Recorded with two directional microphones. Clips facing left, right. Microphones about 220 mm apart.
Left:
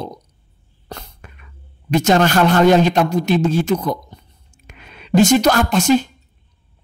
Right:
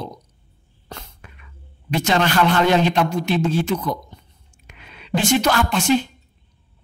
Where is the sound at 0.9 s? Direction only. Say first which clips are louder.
Left 4 dB; 45° left (ahead or behind).